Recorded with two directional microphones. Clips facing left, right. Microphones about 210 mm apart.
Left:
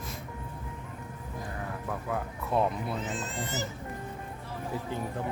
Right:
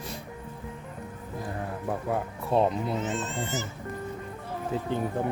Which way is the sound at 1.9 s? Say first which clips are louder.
Right 5 dB; 30° right (ahead or behind).